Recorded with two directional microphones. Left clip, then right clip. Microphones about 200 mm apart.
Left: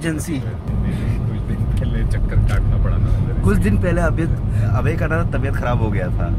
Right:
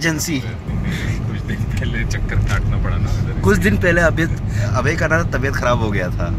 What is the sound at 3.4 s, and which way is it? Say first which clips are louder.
Speech: right 6 dB; 5° right (ahead or behind).